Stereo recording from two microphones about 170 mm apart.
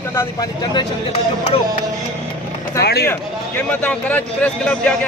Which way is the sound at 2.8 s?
70° left (ahead or behind).